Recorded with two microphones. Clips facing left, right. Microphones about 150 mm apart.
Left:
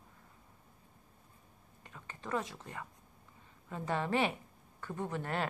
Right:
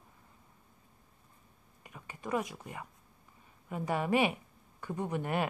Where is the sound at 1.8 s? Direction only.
15° right (ahead or behind).